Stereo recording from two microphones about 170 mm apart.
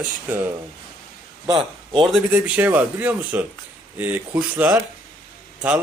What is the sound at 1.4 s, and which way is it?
Speech, 25° right (ahead or behind).